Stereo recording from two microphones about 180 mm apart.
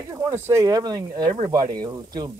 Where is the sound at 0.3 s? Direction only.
15° right (ahead or behind).